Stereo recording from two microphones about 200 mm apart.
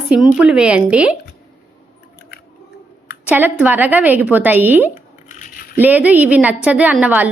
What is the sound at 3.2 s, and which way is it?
A woman's voice, 10° right (ahead or behind).